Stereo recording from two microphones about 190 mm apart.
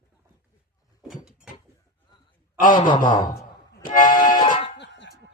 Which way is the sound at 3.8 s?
45° left (ahead or behind).